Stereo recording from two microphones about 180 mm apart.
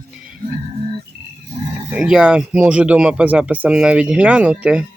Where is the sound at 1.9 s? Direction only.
5° right (ahead or behind).